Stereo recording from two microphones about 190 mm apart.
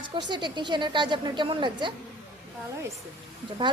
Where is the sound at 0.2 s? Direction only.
25° right (ahead or behind).